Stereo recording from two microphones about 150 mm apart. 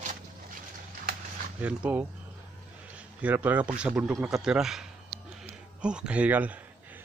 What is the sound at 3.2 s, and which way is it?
Speech, 10° right (ahead or behind).